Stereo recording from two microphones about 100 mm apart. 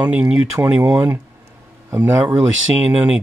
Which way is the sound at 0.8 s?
30° right (ahead or behind).